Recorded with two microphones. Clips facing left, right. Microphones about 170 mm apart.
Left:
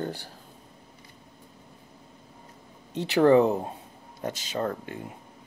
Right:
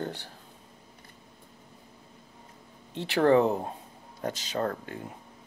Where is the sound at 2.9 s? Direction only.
20° left (ahead or behind).